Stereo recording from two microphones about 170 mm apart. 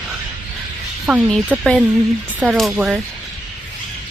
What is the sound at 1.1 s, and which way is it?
Speech, 5° right (ahead or behind).